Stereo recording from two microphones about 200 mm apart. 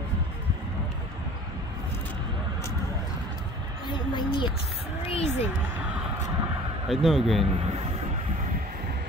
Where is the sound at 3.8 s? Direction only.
25° left (ahead or behind).